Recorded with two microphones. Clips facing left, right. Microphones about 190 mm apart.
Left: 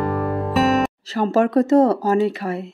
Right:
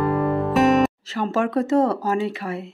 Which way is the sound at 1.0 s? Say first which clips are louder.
Left 5 dB; 40° left (ahead or behind).